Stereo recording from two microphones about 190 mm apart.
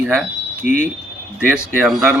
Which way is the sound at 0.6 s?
40° left (ahead or behind).